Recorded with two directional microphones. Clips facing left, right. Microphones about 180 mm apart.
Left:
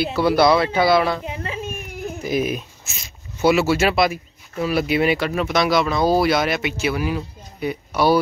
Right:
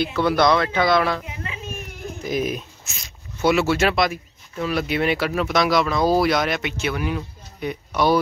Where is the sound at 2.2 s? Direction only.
5° left (ahead or behind).